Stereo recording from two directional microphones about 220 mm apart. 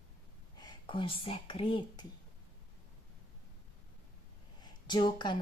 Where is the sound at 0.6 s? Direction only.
20° left (ahead or behind).